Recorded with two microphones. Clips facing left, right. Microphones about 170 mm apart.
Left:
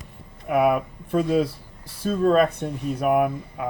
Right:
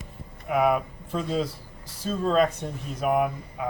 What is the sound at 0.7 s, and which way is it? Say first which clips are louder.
Speech: left 3 dB; 60° left (ahead or behind).